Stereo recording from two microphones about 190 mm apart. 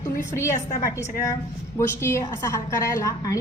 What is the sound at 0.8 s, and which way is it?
A woman's voice, 15° left (ahead or behind).